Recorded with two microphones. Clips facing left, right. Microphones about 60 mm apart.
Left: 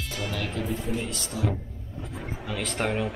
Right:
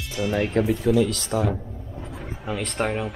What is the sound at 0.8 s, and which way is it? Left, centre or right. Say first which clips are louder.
Speech: right 10 dB; right.